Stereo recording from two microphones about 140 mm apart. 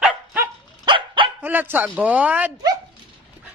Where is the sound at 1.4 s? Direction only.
15° right (ahead or behind).